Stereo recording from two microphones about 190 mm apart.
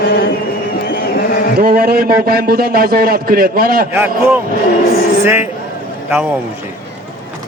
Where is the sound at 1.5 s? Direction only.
55° right (ahead or behind).